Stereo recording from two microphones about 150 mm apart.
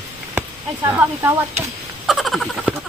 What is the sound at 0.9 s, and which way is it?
Speech, 15° right (ahead or behind).